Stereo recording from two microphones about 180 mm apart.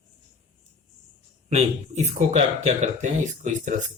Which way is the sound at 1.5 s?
40° right (ahead or behind).